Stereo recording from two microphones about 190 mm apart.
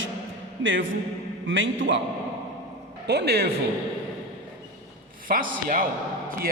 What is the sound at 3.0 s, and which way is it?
Speech, 60° right (ahead or behind).